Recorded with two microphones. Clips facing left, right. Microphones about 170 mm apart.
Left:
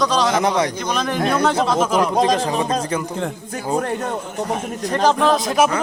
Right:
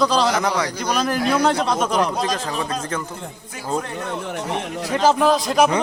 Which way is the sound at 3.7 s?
50° left (ahead or behind).